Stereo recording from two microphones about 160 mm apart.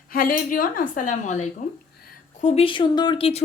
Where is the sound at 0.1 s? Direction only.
65° left (ahead or behind).